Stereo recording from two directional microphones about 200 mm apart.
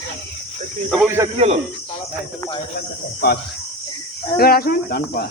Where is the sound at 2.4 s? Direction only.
25° left (ahead or behind).